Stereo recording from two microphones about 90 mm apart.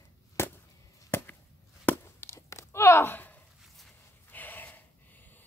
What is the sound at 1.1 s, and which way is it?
Chop, 25° left (ahead or behind).